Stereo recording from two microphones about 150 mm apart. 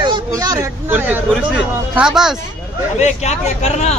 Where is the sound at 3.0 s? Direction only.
50° left (ahead or behind).